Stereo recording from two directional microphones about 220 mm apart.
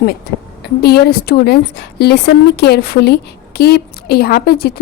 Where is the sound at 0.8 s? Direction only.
45° left (ahead or behind).